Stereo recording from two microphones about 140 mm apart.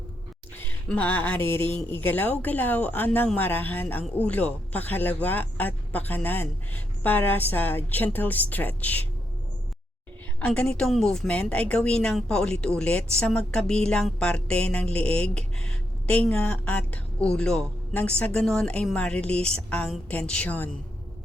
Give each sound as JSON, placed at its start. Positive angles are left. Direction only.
{"t": 0.6, "sound": "a sound", "side_deg": 10}
{"t": 2.0, "sound": "speech", "side_deg": 15}
{"t": 10.4, "sound": "speech", "side_deg": 10}